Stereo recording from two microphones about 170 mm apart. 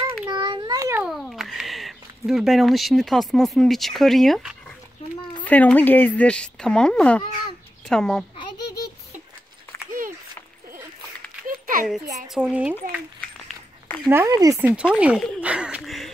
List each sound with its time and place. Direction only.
0.3 s child singing: 25° right (ahead or behind)
1.0 s a child's voice: centre (ahead or behind)
11.4 s a sound: 50° right (ahead or behind)
12.4 s speech: 5° right (ahead or behind)
14.1 s speech: 20° right (ahead or behind)
14.6 s speech: 10° right (ahead or behind)
15.4 s a sound: 5° right (ahead or behind)